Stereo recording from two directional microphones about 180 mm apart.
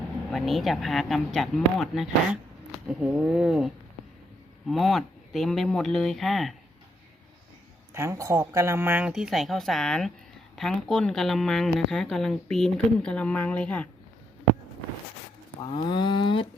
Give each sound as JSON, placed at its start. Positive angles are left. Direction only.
{"t": 0.3, "sound": "speech", "side_deg": 0}
{"t": 4.7, "sound": "speech", "side_deg": 0}
{"t": 7.9, "sound": "speech", "side_deg": -15}
{"t": 15.7, "sound": "speech", "side_deg": 25}